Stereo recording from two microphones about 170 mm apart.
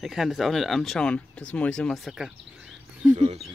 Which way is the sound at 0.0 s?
Centre (ahead or behind).